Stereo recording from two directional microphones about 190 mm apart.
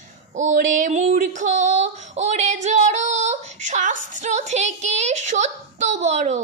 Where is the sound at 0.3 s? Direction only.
40° right (ahead or behind).